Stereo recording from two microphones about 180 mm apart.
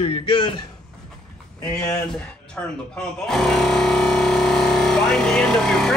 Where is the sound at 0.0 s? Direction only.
30° left (ahead or behind).